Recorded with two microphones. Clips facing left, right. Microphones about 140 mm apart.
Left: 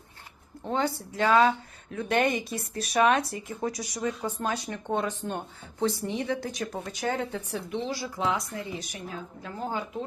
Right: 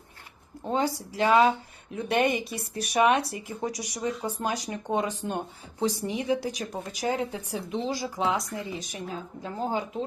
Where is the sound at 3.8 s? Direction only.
15° right (ahead or behind).